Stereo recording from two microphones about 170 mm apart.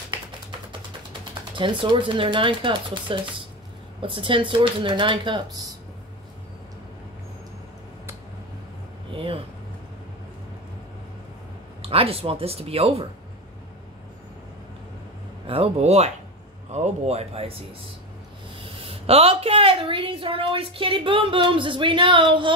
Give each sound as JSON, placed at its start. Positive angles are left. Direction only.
{"t": 1.5, "sound": "speech", "side_deg": -30}
{"t": 9.1, "sound": "speech", "side_deg": -30}
{"t": 11.8, "sound": "a woman's voice", "side_deg": -35}
{"t": 15.4, "sound": "a woman's voice", "side_deg": -35}